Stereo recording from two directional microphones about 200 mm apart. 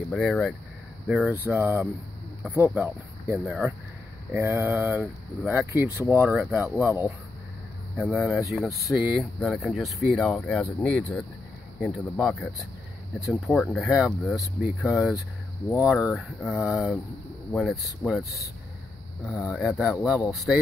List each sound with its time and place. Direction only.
0.1 s speech: centre (ahead or behind)
8.2 s speech: 5° right (ahead or behind)
19.8 s speech: 5° right (ahead or behind)